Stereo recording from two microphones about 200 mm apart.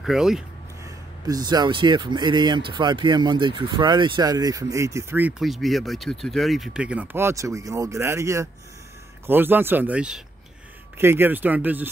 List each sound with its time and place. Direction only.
0.0 s speech: centre (ahead or behind)
0.8 s speech: 20° right (ahead or behind)